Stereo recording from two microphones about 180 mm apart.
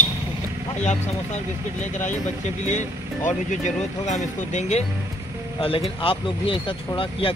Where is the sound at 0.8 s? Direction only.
40° left (ahead or behind).